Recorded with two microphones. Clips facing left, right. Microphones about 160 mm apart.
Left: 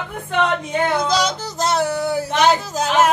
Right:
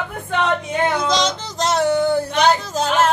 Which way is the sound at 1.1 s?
5° left (ahead or behind).